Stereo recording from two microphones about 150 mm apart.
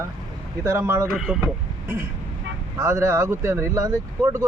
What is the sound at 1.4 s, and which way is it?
A man's voice, 15° right (ahead or behind).